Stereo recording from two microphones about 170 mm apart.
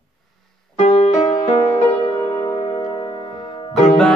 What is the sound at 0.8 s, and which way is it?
Music, 40° left (ahead or behind).